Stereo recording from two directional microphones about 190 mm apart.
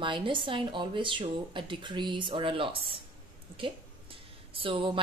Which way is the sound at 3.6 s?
30° right (ahead or behind).